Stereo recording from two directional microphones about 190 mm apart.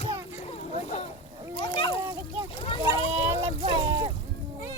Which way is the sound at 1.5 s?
25° left (ahead or behind).